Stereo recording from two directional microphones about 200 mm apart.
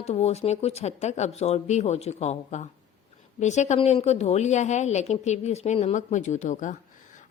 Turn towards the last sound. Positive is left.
turn(degrees=40)  # may be behind; listen again after turning